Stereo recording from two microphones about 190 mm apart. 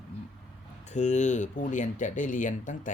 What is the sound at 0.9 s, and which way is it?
Speech, 40° left (ahead or behind).